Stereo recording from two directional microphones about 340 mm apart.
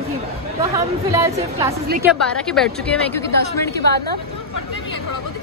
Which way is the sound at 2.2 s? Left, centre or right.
Centre.